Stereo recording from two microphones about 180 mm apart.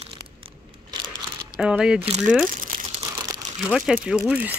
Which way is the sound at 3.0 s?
20° right (ahead or behind).